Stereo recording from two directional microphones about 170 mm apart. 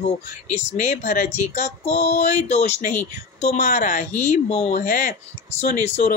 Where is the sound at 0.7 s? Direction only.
45° left (ahead or behind).